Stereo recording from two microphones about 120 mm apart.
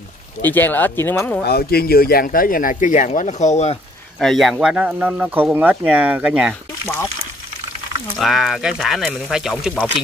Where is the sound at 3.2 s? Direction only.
75° left (ahead or behind).